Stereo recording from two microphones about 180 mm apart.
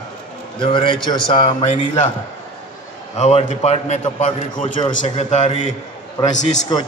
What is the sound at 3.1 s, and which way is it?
A man's voice, 40° left (ahead or behind).